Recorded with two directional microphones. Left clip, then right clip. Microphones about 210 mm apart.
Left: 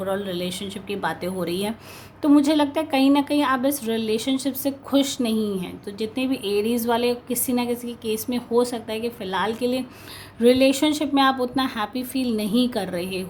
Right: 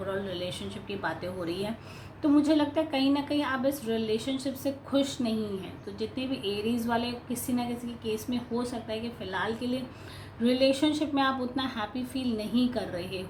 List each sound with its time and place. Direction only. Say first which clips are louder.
0.0 s a woman's voice: left 7 dB; 50° left (ahead or behind)